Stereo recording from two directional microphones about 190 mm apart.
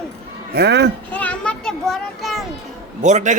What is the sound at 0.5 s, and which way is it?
Speech, 60° right (ahead or behind).